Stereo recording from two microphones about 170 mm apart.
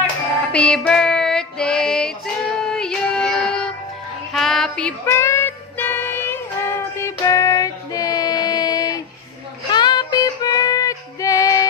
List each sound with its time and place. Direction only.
0.0 s music: 5° left (ahead or behind)
5.0 s music: 15° left (ahead or behind)